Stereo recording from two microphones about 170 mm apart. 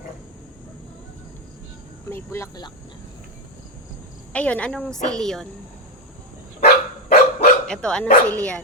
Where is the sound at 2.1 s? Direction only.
15° left (ahead or behind).